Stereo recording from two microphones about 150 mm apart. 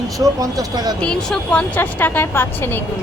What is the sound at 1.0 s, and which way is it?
Speech, 5° left (ahead or behind).